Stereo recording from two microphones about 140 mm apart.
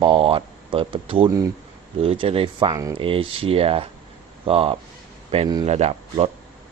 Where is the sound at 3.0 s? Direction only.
40° right (ahead or behind).